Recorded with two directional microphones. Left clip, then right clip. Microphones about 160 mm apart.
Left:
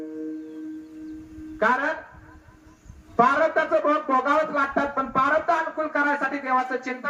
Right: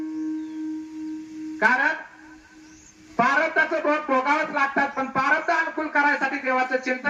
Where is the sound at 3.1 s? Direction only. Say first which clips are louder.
Left 1 dB; 15° left (ahead or behind).